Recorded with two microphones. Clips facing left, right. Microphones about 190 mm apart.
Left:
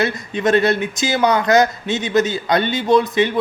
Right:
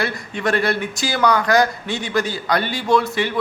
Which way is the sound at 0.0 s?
20° left (ahead or behind).